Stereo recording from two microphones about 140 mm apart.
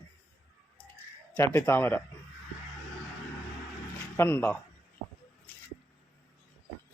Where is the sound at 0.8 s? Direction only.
10° left (ahead or behind).